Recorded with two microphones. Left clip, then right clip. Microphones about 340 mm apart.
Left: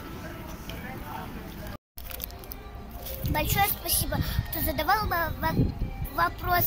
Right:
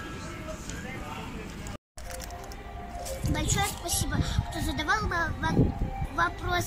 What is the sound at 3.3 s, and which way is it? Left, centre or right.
Speech, centre.